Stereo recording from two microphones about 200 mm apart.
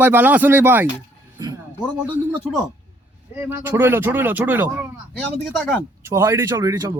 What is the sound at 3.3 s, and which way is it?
Speech, 10° right (ahead or behind).